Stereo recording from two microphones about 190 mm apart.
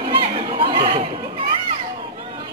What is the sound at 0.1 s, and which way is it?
Chatter, 30° right (ahead or behind).